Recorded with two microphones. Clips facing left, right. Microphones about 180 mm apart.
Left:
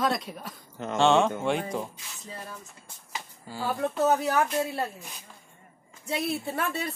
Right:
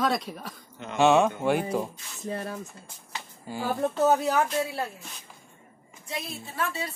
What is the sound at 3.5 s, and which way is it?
Speech, 20° right (ahead or behind).